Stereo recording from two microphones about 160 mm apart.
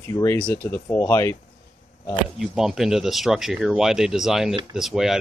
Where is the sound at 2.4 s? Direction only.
Centre (ahead or behind).